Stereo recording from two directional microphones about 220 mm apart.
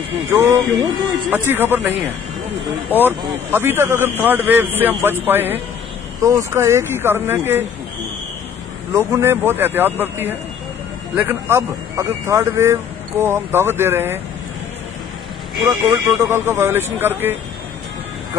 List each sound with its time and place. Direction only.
0.3 s speech: 15° right (ahead or behind)
8.9 s speech: 10° right (ahead or behind)
15.7 s speech: 10° right (ahead or behind)